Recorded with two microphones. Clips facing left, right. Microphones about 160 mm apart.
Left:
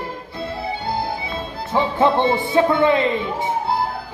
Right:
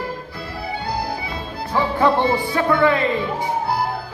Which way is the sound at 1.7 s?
20° left (ahead or behind).